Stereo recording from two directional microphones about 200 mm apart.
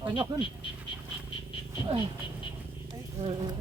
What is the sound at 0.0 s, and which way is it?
Speech, 25° right (ahead or behind).